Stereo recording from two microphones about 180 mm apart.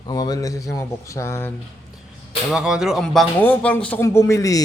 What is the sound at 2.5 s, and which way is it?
Speech, 5° right (ahead or behind).